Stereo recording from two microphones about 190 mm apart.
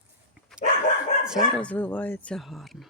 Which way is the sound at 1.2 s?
Centre (ahead or behind).